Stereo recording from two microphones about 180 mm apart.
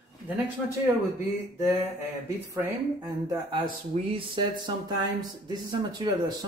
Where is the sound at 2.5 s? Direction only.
20° right (ahead or behind).